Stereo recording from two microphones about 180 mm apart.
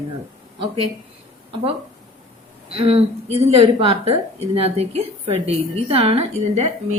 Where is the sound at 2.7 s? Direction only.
35° right (ahead or behind).